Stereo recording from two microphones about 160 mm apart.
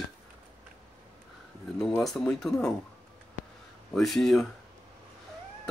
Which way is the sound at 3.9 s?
Centre (ahead or behind).